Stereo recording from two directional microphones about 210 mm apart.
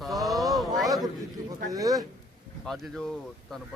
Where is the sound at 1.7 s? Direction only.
15° right (ahead or behind).